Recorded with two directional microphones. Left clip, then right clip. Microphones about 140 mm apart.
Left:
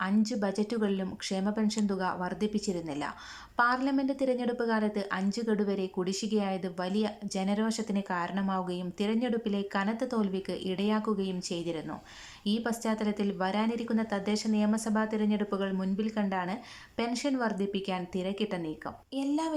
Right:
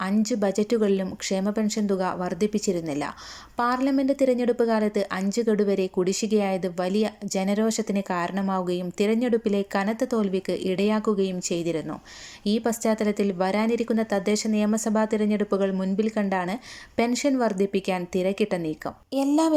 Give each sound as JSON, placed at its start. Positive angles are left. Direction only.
{"t": 0.0, "sound": "speech", "side_deg": -15}